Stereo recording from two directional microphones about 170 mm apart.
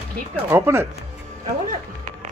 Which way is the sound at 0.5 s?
15° right (ahead or behind).